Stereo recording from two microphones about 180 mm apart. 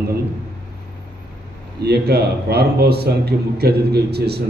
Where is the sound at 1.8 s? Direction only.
65° right (ahead or behind).